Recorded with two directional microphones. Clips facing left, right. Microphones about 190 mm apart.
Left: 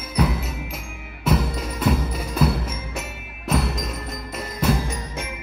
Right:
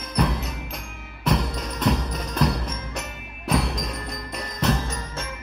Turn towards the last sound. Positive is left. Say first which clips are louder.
# left 2 dB
turn(degrees=15)  # may be behind; listen again after turning